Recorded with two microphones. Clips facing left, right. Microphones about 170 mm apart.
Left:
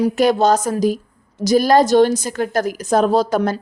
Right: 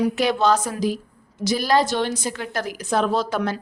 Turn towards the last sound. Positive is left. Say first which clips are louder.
# left 6 dB
turn(degrees=40)  # may be behind; listen again after turning